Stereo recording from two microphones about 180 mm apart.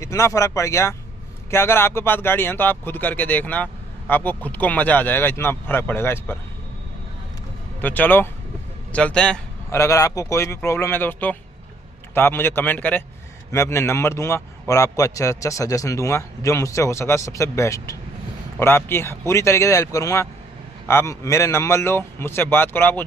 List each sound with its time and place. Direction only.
0.0 s speech: 15° left (ahead or behind)
7.8 s a man's voice: 10° left (ahead or behind)
9.7 s speech: 15° left (ahead or behind)